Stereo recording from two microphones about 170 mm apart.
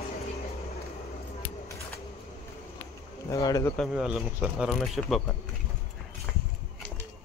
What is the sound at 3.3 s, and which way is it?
Speech, 20° left (ahead or behind).